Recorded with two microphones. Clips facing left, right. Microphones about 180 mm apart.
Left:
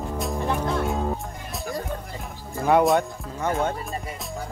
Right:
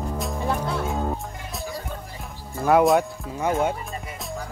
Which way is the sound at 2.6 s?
Centre (ahead or behind).